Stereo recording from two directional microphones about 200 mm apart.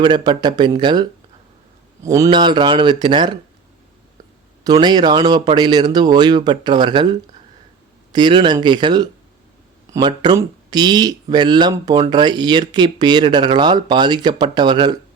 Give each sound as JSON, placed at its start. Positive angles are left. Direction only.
{"t": 0.0, "sound": "speech", "side_deg": -20}
{"t": 4.6, "sound": "speech", "side_deg": -20}